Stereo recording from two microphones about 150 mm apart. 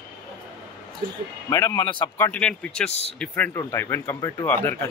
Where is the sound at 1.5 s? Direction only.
20° left (ahead or behind).